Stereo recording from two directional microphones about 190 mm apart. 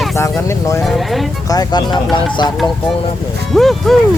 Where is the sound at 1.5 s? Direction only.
20° left (ahead or behind).